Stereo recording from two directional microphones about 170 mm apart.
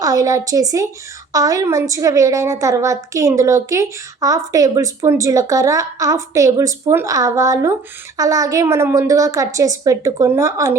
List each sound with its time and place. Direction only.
0.0 s a woman's voice: 20° right (ahead or behind)